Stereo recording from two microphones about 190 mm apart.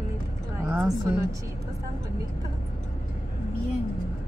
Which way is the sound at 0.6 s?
10° right (ahead or behind).